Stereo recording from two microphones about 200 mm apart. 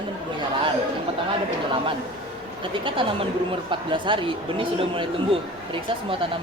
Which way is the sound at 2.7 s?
25° right (ahead or behind).